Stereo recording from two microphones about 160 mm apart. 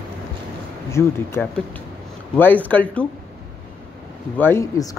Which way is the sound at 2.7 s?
10° left (ahead or behind).